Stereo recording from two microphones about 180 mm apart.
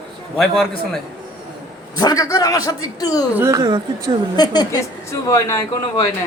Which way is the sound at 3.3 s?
15° right (ahead or behind).